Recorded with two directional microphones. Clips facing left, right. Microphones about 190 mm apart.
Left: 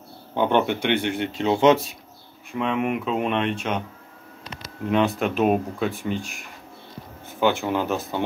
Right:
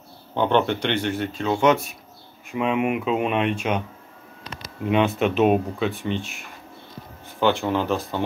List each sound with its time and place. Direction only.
0.3 s speech: 10° left (ahead or behind)
2.5 s speech: 5° right (ahead or behind)
4.8 s speech: 5° right (ahead or behind)